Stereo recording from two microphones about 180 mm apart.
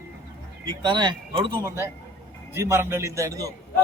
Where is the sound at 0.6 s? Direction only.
25° right (ahead or behind).